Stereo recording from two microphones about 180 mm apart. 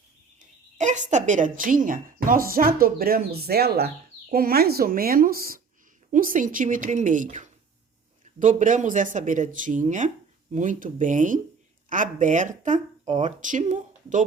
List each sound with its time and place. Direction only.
0.3 s a woman's voice: 45° right (ahead or behind)